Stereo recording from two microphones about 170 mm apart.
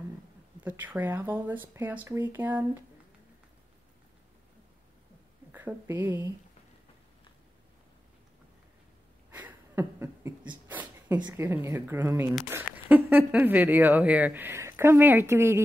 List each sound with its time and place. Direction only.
0.7 s speech: 10° right (ahead or behind)
5.5 s a woman's voice: 15° right (ahead or behind)
9.3 s a sound: 10° right (ahead or behind)
11.1 s speech: 25° right (ahead or behind)
11.4 s speech: 15° right (ahead or behind)